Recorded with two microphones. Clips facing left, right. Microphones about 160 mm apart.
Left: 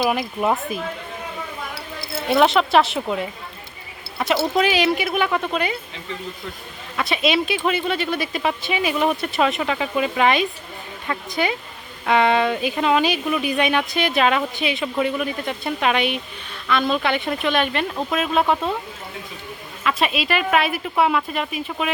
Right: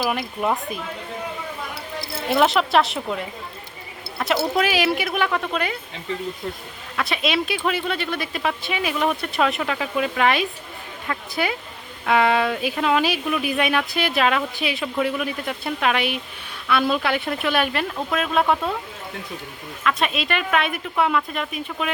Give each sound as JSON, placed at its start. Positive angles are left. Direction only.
{"t": 0.0, "sound": "speech", "side_deg": 0}
{"t": 2.3, "sound": "speech", "side_deg": 0}
{"t": 4.4, "sound": "speech", "side_deg": -5}
{"t": 6.9, "sound": "speech", "side_deg": 0}
{"t": 20.0, "sound": "speech", "side_deg": 5}